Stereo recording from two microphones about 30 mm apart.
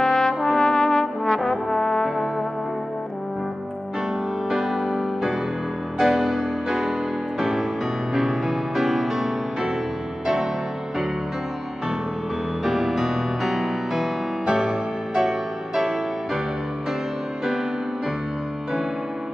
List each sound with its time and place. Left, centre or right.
0.0 s brass instrument: left
4.5 s music: centre
12.6 s music: centre